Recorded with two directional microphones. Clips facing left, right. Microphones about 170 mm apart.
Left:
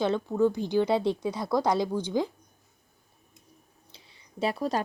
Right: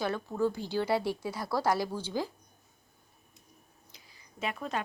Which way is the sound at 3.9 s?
30° left (ahead or behind).